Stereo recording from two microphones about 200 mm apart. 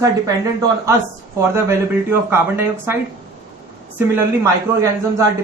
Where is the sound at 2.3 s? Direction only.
10° right (ahead or behind).